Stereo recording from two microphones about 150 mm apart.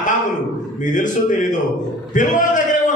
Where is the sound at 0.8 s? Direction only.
55° left (ahead or behind).